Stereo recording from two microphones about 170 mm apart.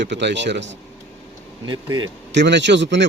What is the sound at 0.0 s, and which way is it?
Speech, 90° right.